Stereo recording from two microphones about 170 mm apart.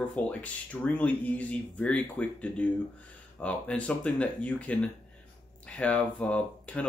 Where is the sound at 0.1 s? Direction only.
10° left (ahead or behind).